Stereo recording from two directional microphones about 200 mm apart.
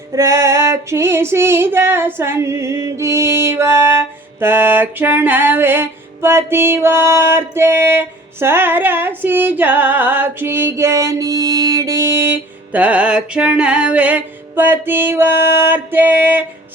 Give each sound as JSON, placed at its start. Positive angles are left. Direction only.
{"t": 0.2, "sound": "female singing", "side_deg": -15}